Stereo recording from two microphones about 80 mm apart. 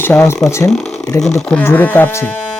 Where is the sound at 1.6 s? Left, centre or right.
Left.